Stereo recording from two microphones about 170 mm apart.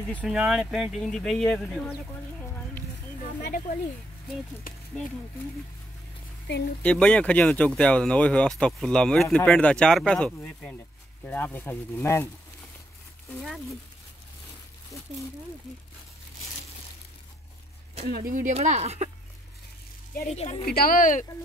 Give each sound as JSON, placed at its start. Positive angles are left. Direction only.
{"t": 0.2, "sound": "speech", "side_deg": -5}
{"t": 3.3, "sound": "speech", "side_deg": 55}
{"t": 4.7, "sound": "a sound", "side_deg": 55}
{"t": 6.8, "sound": "speech", "side_deg": 5}
{"t": 18.0, "sound": "speech", "side_deg": -60}
{"t": 18.5, "sound": "speech", "side_deg": -40}
{"t": 20.3, "sound": "a woman's voice", "side_deg": 35}
{"t": 20.6, "sound": "speech", "side_deg": 65}